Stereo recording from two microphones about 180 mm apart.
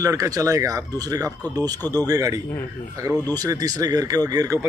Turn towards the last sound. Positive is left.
turn(degrees=-20)  # may be behind; listen again after turning